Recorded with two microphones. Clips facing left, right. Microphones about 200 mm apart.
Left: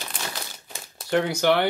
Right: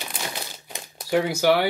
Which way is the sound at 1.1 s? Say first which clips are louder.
Right 1 dB; 5° right (ahead or behind).